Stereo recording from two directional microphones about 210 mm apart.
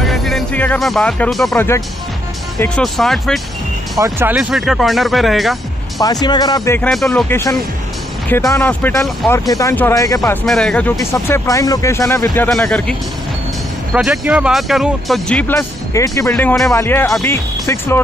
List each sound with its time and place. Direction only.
0.0 s speech: centre (ahead or behind)
5.9 s speech: 20° left (ahead or behind)
6.9 s speech: centre (ahead or behind)
10.4 s speech: centre (ahead or behind)
13.9 s speech: 5° right (ahead or behind); by 18.0 s 10° left (ahead or behind)